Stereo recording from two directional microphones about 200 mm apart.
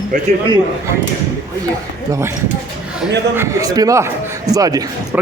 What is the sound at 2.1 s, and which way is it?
Speech, 15° right (ahead or behind).